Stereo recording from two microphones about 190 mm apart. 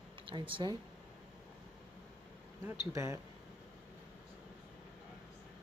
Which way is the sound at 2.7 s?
15° right (ahead or behind).